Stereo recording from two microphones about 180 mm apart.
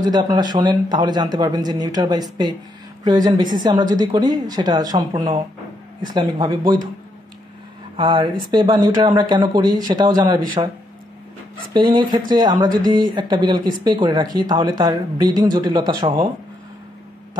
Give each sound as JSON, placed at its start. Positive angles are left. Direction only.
{"t": 0.0, "sound": "speech", "side_deg": -20}
{"t": 6.4, "sound": "speech", "side_deg": -25}
{"t": 7.9, "sound": "speech", "side_deg": -25}
{"t": 11.7, "sound": "speech", "side_deg": -25}